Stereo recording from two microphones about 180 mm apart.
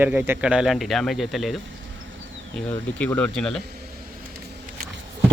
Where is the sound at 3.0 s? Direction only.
10° left (ahead or behind).